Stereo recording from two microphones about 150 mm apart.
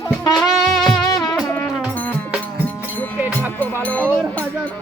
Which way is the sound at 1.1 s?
25° left (ahead or behind).